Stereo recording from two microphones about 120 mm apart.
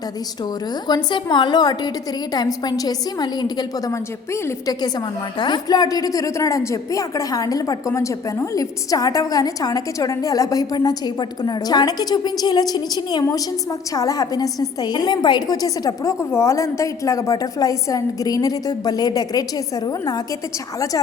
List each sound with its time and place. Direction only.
0.9 s a woman's voice: 35° left (ahead or behind)
20.7 s a woman's voice: 30° left (ahead or behind)